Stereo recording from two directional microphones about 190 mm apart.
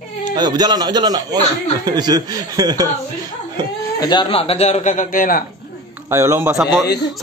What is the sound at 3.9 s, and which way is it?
Speech, 25° left (ahead or behind).